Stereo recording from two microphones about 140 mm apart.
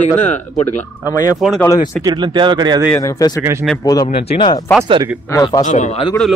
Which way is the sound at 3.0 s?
25° left (ahead or behind).